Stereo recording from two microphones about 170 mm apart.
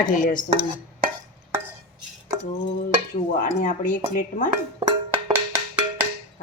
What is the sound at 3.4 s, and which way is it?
Speech, 50° left (ahead or behind).